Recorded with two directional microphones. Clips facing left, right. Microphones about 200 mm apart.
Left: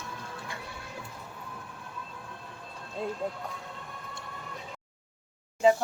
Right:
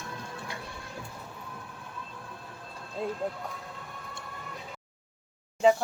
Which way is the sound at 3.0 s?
Centre (ahead or behind).